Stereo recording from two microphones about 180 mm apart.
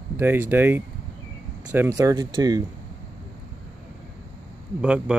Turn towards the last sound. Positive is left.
turn(degrees=-5)  # may be behind; listen again after turning